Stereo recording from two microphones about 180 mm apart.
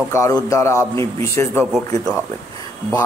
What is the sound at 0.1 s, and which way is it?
A man's voice, 15° left (ahead or behind).